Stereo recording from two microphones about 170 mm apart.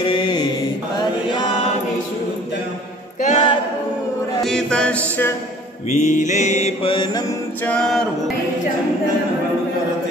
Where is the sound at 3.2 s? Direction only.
45° left (ahead or behind).